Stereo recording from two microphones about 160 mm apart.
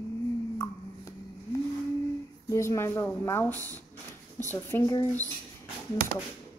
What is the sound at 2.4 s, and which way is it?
A woman's voice, 20° left (ahead or behind).